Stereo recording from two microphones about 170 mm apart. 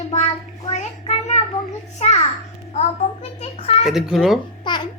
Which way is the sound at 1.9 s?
40° left (ahead or behind).